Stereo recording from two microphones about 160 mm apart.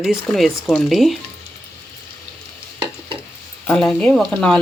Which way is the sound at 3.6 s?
5° left (ahead or behind).